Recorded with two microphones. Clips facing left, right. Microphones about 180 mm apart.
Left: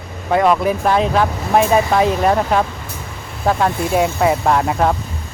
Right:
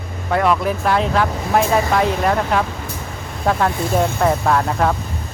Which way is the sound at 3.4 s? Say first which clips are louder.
Left 1 dB; 5° left (ahead or behind).